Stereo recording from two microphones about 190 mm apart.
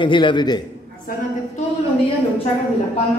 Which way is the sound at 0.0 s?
25° left (ahead or behind).